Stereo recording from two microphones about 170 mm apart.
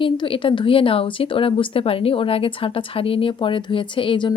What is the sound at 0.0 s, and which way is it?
A woman's voice, 30° left (ahead or behind).